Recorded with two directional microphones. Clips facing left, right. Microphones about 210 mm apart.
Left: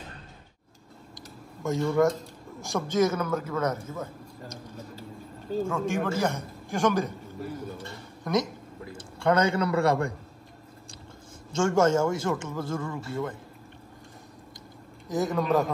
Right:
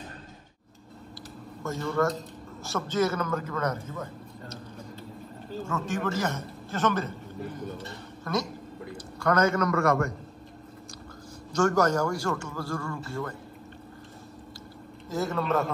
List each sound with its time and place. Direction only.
1.6 s a man's voice: 15° left (ahead or behind)
5.7 s a man's voice: 10° left (ahead or behind)
8.2 s a man's voice: 20° left (ahead or behind)
11.5 s a man's voice: 25° left (ahead or behind)
15.1 s speech: 15° left (ahead or behind)